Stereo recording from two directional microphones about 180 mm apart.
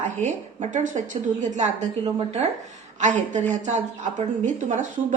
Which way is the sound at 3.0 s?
40° right (ahead or behind).